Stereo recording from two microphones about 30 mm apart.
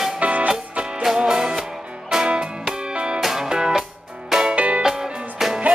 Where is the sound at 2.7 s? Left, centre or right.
Right.